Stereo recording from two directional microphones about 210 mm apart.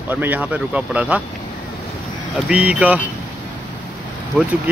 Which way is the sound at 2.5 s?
5° right (ahead or behind).